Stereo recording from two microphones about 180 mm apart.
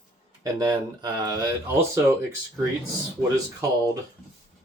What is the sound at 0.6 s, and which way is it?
Speech, 20° right (ahead or behind).